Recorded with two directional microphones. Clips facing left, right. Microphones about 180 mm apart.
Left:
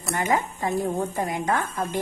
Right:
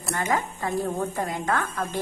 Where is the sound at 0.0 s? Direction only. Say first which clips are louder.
Left 2 dB; 20° left (ahead or behind).